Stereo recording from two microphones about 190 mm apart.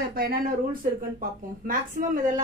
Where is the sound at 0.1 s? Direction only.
50° right (ahead or behind).